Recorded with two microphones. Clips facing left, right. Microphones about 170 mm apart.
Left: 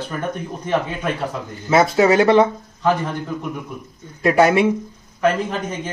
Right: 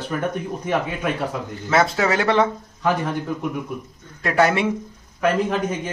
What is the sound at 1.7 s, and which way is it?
Speech, 15° left (ahead or behind).